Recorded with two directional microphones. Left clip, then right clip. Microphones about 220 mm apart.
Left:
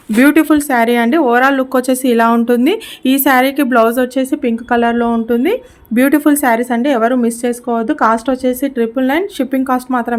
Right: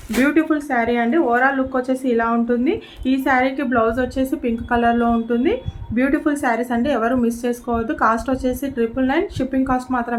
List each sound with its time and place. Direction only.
0.2 s speech: 55° left (ahead or behind)